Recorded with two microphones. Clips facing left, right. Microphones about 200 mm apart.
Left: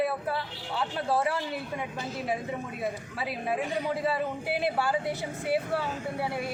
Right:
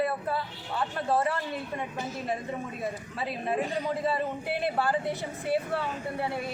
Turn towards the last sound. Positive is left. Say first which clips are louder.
# even
turn(degrees=5)  # may be behind; listen again after turning